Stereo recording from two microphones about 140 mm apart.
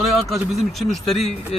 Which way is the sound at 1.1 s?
50° left (ahead or behind).